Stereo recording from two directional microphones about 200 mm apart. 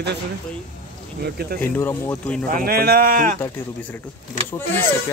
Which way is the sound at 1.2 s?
50° right (ahead or behind).